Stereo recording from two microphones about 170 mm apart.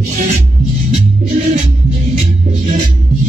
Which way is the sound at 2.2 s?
50° right (ahead or behind).